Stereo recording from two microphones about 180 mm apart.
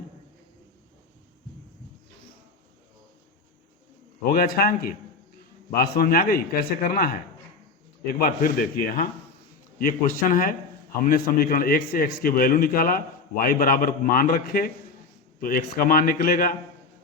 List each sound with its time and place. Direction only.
4.3 s a man's voice: 55° left (ahead or behind)
8.2 s a man's voice: 50° left (ahead or behind)